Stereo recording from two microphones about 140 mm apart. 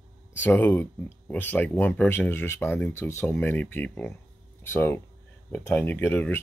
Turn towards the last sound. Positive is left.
turn(degrees=15)  # may be behind; listen again after turning